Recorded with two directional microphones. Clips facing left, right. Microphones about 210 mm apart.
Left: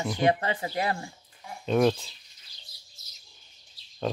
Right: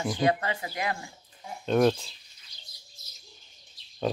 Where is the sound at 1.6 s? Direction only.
Centre (ahead or behind).